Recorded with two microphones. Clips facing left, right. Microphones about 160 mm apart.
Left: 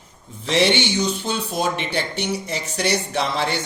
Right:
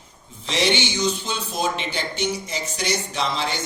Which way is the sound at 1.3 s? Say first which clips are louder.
Left 2 dB; 55° left (ahead or behind).